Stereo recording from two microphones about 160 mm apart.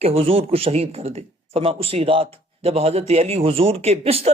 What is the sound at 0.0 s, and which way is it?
A man's voice, 35° right (ahead or behind).